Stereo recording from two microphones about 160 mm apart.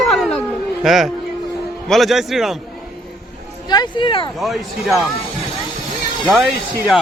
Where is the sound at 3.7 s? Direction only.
30° left (ahead or behind).